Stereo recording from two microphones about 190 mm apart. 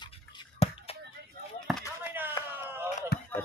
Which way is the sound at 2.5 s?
10° right (ahead or behind).